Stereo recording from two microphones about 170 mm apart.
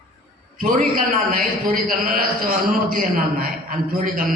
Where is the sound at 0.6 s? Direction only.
55° right (ahead or behind).